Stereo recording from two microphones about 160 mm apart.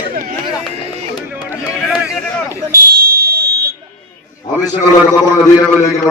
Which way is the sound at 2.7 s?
65° right (ahead or behind).